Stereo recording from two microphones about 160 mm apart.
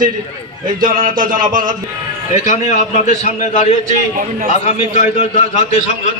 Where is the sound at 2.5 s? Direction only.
45° left (ahead or behind).